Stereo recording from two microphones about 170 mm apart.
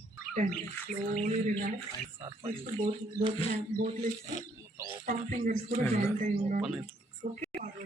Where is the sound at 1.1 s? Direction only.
40° right (ahead or behind).